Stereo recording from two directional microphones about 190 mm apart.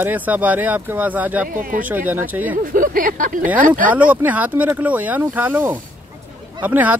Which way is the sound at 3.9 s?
10° right (ahead or behind).